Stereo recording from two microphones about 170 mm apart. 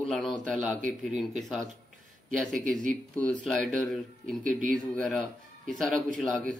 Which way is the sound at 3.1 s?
5° left (ahead or behind).